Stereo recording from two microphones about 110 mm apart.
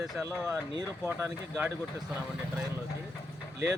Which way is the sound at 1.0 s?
25° right (ahead or behind).